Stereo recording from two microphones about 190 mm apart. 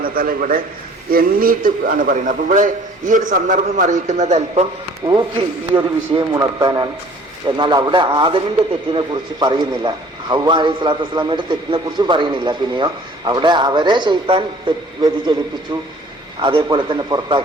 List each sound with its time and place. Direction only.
0.0 s a man's voice: 50° right (ahead or behind)
5.7 s a man's voice: 20° right (ahead or behind)
16.4 s a man's voice: 25° right (ahead or behind)